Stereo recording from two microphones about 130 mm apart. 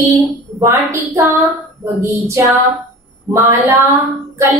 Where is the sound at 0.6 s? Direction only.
20° right (ahead or behind).